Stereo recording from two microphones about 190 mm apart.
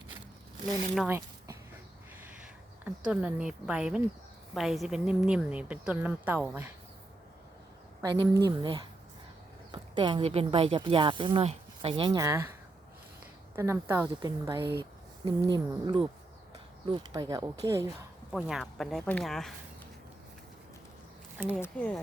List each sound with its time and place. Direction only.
1.0 s a sound: 10° right (ahead or behind)
2.8 s speech: 5° right (ahead or behind)
8.0 s a woman's voice: 20° right (ahead or behind)
13.6 s a woman's voice: 15° right (ahead or behind)
18.3 s speech: 5° right (ahead or behind)
21.5 s speech: 5° left (ahead or behind)